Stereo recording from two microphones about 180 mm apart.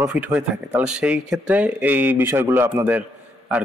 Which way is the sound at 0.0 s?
5° right (ahead or behind).